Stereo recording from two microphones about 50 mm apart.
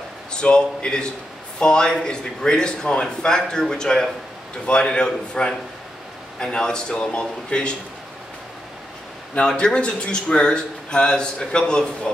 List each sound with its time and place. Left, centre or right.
0.3 s a man's voice: centre
9.5 s a man's voice: centre